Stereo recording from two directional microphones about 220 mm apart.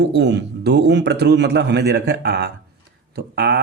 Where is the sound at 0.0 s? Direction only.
50° right (ahead or behind).